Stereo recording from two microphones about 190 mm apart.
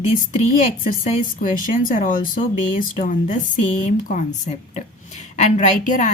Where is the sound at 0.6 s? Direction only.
45° left (ahead or behind).